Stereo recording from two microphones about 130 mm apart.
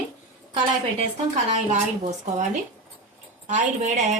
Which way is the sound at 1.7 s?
70° right (ahead or behind).